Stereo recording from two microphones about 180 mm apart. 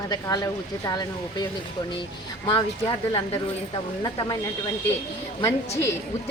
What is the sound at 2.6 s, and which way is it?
Speech, 25° left (ahead or behind).